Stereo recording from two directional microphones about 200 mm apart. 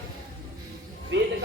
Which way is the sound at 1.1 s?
70° right (ahead or behind).